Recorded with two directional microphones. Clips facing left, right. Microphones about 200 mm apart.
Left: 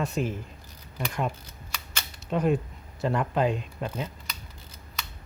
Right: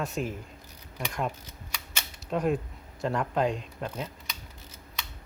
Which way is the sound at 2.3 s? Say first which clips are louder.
Left 2 dB; centre (ahead or behind).